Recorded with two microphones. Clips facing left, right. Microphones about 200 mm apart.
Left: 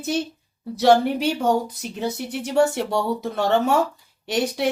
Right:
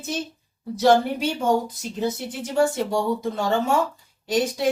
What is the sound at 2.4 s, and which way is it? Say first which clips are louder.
A woman's voice: left 2 dB; 65° left (ahead or behind).